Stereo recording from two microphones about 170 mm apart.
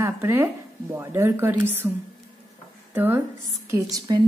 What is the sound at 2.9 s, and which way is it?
A woman's voice, 15° right (ahead or behind).